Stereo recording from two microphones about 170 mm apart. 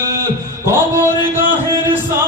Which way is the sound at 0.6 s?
15° right (ahead or behind).